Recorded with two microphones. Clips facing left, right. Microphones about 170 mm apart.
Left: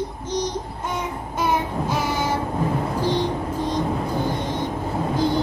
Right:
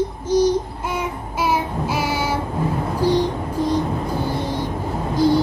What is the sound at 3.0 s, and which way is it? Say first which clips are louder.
Music: right 6 dB; 10° right (ahead or behind).